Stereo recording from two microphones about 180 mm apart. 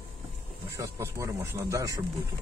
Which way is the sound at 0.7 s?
15° right (ahead or behind).